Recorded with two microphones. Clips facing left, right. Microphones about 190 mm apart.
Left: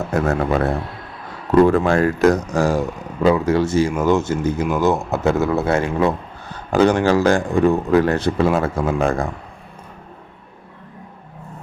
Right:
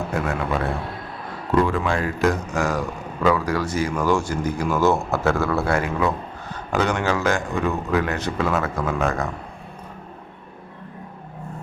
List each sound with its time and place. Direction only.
0.1 s speech: 40° left (ahead or behind)
1.6 s speech: 45° left (ahead or behind)